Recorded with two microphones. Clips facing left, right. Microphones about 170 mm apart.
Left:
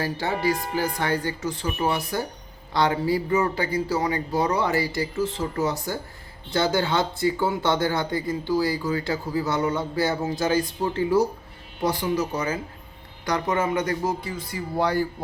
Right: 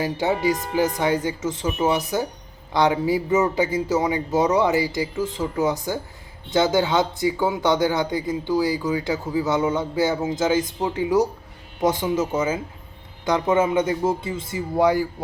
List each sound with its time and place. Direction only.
0.0 s a man's voice: 20° right (ahead or behind)